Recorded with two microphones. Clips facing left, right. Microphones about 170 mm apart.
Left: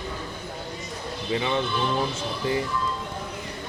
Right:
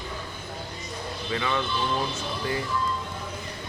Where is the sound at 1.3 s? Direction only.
25° left (ahead or behind).